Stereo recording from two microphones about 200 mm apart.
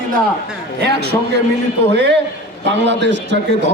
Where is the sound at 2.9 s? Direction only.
60° right (ahead or behind).